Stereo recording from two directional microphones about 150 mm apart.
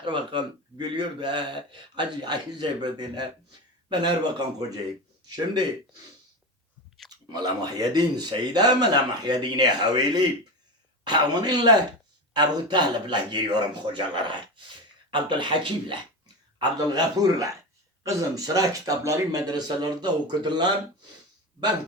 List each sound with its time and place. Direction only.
0.0 s speech: 30° right (ahead or behind)
7.1 s speech: 25° right (ahead or behind)